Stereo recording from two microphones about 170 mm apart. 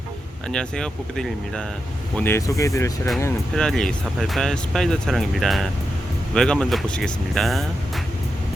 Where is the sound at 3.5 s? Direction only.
5° left (ahead or behind).